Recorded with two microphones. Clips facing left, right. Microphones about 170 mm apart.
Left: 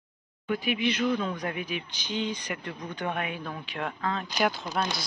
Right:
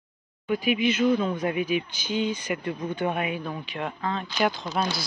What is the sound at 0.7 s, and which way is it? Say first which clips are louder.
A woman's voice: right 5 dB; 5° right (ahead or behind).